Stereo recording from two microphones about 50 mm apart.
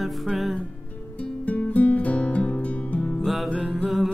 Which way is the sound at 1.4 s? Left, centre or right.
Left.